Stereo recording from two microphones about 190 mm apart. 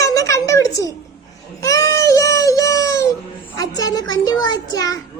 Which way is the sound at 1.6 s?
15° left (ahead or behind).